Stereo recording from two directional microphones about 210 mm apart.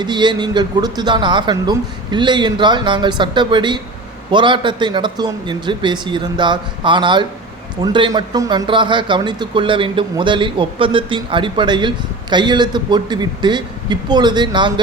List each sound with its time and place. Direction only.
0.0 s speech: 20° right (ahead or behind)